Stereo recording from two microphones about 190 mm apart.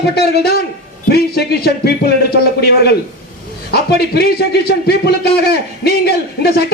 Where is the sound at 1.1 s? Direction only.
55° left (ahead or behind).